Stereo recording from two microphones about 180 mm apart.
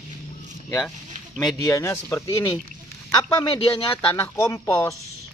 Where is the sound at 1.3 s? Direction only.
Centre (ahead or behind).